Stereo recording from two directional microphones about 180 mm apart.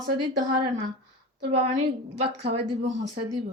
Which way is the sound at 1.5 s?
35° right (ahead or behind).